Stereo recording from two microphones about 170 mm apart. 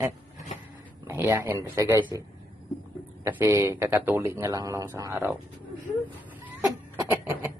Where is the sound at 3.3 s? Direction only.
15° right (ahead or behind).